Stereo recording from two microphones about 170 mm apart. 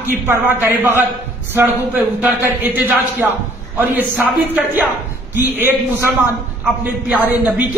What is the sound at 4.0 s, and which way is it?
A man's voice, 10° right (ahead or behind).